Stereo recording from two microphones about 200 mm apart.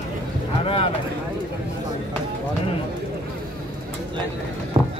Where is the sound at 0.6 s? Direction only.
25° left (ahead or behind).